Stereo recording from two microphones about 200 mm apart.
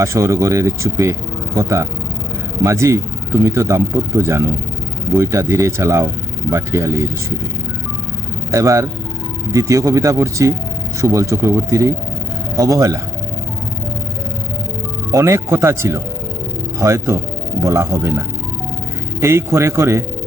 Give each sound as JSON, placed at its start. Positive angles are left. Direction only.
{"t": 0.0, "sound": "speech", "side_deg": -15}
{"t": 8.5, "sound": "speech", "side_deg": -15}
{"t": 15.1, "sound": "speech", "side_deg": -15}
{"t": 19.2, "sound": "speech", "side_deg": -15}